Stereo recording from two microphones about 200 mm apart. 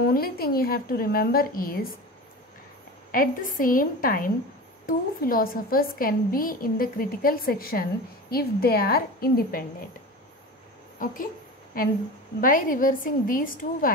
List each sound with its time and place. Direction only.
0.0 s a woman's voice: 50° left (ahead or behind)
3.1 s a woman's voice: 45° left (ahead or behind)
11.0 s a woman's voice: 40° left (ahead or behind)
12.4 s a woman's voice: 45° left (ahead or behind)